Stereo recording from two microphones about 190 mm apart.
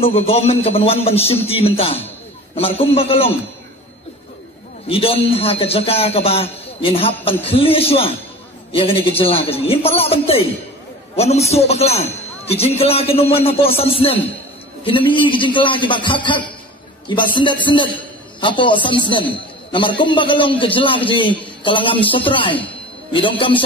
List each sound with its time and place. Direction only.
0.0 s a man's voice: 30° left (ahead or behind)
4.8 s a man's voice: 30° left (ahead or behind)